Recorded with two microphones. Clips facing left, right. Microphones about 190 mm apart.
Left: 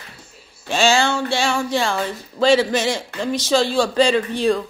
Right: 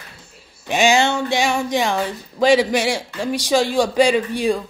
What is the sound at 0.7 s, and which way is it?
Speech, 15° right (ahead or behind).